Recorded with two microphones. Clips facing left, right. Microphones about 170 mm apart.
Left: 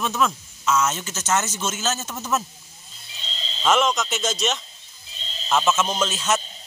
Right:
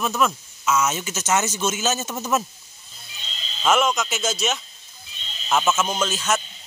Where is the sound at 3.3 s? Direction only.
30° left (ahead or behind).